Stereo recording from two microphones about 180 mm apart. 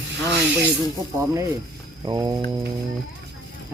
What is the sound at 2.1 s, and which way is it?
Speech, 20° right (ahead or behind).